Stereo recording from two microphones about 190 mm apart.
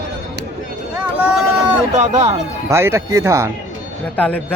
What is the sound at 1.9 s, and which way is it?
Speech, 35° right (ahead or behind).